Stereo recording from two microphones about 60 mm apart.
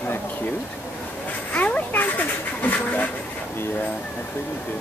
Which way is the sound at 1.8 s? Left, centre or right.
Left.